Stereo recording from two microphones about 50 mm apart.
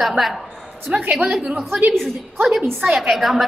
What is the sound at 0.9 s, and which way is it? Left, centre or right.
Speech, right.